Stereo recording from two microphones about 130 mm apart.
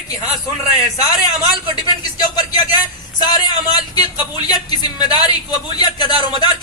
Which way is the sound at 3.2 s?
35° left (ahead or behind).